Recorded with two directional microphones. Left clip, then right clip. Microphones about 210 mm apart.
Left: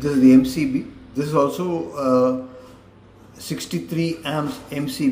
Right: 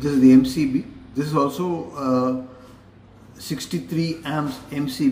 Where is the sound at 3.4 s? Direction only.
10° left (ahead or behind).